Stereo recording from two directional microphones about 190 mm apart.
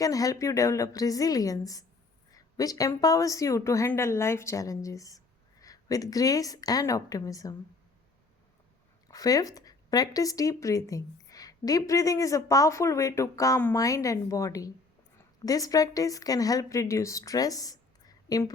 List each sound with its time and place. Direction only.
0.0 s a woman's voice: 20° left (ahead or behind)
9.0 s a woman's voice: 20° left (ahead or behind)